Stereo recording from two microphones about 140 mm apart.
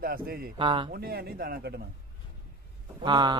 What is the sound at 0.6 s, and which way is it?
Speech, 35° right (ahead or behind).